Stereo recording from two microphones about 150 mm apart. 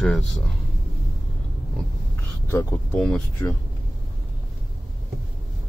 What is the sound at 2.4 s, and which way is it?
Speech, 20° left (ahead or behind).